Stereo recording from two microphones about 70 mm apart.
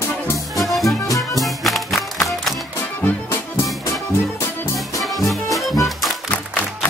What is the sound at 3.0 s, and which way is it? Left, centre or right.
Music, left.